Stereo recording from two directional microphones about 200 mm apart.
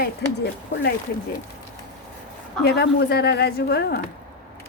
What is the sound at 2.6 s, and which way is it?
A woman's voice, 55° left (ahead or behind).